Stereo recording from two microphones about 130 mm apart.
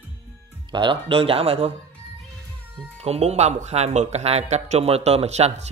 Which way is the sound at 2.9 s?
50° right (ahead or behind).